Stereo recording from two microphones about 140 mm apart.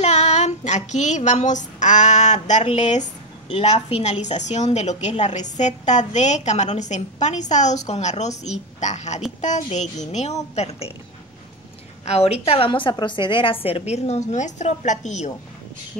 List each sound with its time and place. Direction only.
0.0 s child singing: 55° left (ahead or behind)
2.6 s a woman's voice: 55° left (ahead or behind)
3.4 s a woman's voice: 45° left (ahead or behind)
12.0 s a woman's voice: 50° left (ahead or behind)